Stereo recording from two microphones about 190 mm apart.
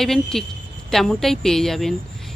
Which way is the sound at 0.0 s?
Centre (ahead or behind).